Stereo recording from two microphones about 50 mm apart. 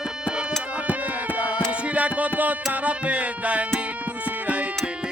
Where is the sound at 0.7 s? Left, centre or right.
Right.